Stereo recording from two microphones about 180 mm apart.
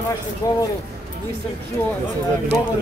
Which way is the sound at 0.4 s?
15° left (ahead or behind).